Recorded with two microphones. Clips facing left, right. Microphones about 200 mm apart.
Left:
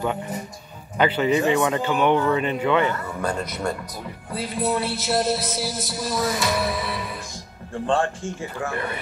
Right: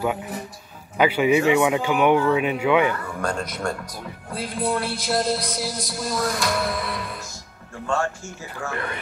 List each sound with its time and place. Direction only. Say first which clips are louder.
0.0 s speech: right 1 dB; 5° right (ahead or behind)
3.1 s speech: even; 5° left (ahead or behind)
7.8 s speech: left 3 dB; 30° left (ahead or behind)